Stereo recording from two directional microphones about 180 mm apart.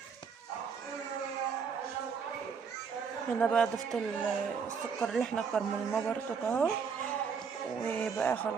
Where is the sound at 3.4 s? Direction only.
5° left (ahead or behind).